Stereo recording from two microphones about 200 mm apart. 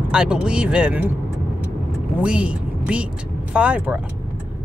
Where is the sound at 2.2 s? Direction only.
5° right (ahead or behind).